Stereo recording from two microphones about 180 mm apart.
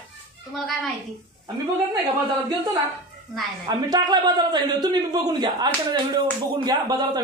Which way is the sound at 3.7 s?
20° right (ahead or behind).